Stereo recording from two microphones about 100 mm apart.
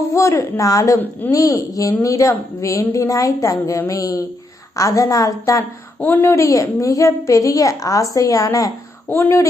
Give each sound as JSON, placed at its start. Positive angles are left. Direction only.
{"t": 0.1, "sound": "a woman's voice", "side_deg": 30}
{"t": 6.0, "sound": "a woman's voice", "side_deg": 20}
{"t": 9.0, "sound": "speech", "side_deg": 20}